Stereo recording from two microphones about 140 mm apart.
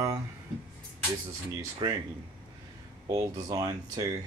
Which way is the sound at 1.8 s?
25° right (ahead or behind).